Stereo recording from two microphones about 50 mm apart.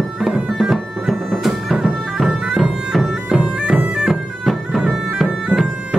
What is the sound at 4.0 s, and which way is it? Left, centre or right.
Bagpipes, centre.